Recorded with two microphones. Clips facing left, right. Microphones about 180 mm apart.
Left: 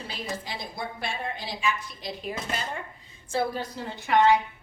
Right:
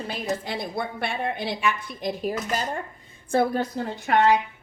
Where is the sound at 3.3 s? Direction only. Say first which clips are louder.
Right 6 dB; 50° right (ahead or behind).